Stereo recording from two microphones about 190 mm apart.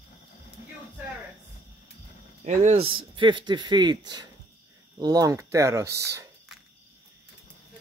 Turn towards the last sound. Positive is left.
turn(degrees=-15)  # may be behind; listen again after turning